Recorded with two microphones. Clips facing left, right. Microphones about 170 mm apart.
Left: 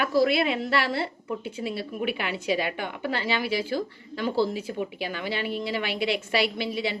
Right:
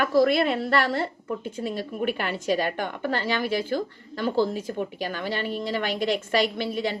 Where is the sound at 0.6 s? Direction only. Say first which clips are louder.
Right 2 dB; 10° left (ahead or behind).